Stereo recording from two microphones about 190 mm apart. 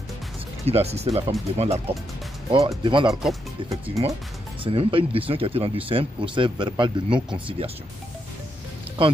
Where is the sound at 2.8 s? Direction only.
25° right (ahead or behind).